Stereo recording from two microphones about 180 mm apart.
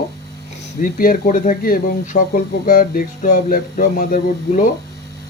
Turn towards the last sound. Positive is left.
turn(degrees=50)  # may be behind; listen again after turning